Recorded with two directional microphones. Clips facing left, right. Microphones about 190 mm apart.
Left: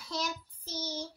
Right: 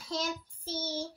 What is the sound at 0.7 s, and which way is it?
Speech, 30° right (ahead or behind).